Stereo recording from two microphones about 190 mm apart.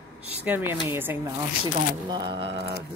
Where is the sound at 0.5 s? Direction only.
10° right (ahead or behind).